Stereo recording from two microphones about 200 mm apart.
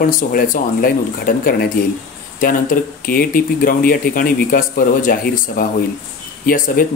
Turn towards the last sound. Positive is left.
turn(degrees=45)  # may be behind; listen again after turning